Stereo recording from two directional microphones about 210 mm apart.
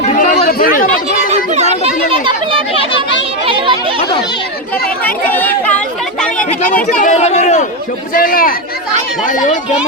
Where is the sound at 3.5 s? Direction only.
25° right (ahead or behind).